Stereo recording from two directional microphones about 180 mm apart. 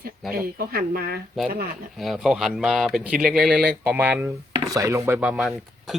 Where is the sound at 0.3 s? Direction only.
55° right (ahead or behind).